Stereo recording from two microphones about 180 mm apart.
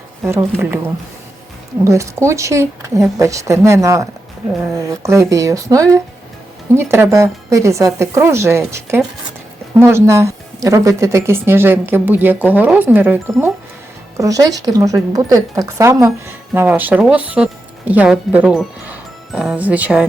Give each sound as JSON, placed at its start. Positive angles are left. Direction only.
{"t": 0.3, "sound": "speech", "side_deg": -15}
{"t": 1.8, "sound": "speech", "side_deg": -15}